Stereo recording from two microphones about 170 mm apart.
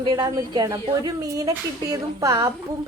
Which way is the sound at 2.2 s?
20° right (ahead or behind).